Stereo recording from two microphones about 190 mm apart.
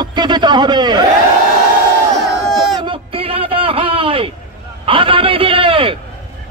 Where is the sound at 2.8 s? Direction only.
30° right (ahead or behind).